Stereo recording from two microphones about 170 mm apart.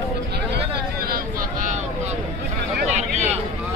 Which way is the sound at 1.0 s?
55° right (ahead or behind).